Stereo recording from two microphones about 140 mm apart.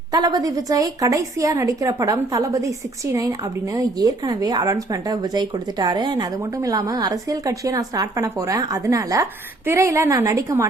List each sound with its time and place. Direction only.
0.1 s a woman's voice: 30° right (ahead or behind)